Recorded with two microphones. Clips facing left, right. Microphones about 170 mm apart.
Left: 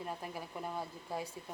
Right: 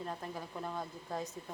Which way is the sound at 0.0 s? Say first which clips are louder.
Right 1 dB; 10° left (ahead or behind).